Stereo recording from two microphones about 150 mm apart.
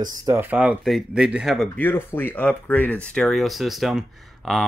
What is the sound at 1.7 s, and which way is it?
Speech, 15° left (ahead or behind).